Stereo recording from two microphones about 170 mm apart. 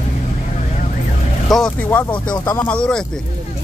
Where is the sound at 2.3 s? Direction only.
25° left (ahead or behind).